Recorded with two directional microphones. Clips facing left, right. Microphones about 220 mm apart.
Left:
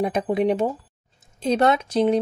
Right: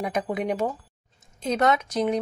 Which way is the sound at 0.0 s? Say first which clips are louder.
Left 6 dB; 30° left (ahead or behind).